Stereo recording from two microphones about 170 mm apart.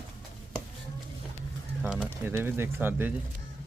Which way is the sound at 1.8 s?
10° right (ahead or behind).